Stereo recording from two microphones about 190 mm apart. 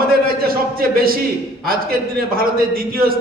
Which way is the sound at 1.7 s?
50° right (ahead or behind).